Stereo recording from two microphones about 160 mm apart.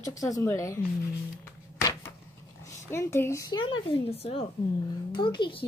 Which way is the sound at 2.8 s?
15° left (ahead or behind).